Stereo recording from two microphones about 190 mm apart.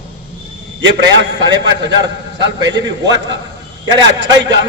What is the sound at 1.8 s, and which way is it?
Speech, 70° right (ahead or behind).